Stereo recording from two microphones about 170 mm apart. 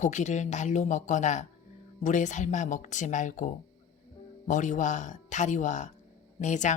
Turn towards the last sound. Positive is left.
turn(degrees=45)  # may be behind; listen again after turning